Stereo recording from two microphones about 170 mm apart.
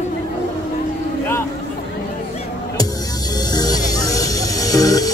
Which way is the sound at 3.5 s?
25° left (ahead or behind).